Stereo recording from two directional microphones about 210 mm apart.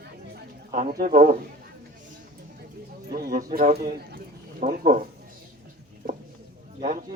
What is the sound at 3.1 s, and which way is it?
A man's voice, 45° right (ahead or behind).